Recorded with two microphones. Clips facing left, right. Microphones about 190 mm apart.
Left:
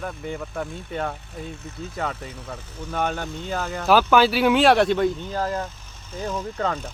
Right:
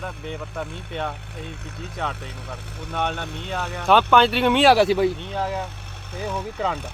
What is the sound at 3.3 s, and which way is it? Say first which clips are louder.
Speech: left 1 dB; 65° right (ahead or behind).